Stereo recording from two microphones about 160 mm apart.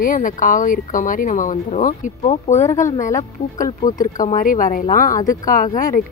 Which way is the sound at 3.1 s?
20° left (ahead or behind).